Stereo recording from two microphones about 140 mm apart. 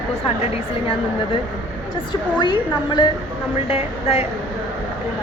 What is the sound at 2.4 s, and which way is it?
Speech, 35° left (ahead or behind).